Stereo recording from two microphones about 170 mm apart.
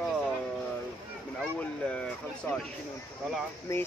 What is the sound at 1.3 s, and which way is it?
Speech, 5° left (ahead or behind).